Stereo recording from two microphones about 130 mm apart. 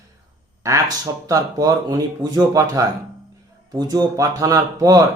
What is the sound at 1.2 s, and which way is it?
Speech, 30° right (ahead or behind).